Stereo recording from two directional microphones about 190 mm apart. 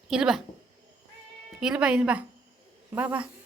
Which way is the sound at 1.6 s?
5° right (ahead or behind).